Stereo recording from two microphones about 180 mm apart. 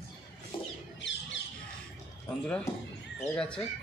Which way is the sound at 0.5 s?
25° left (ahead or behind).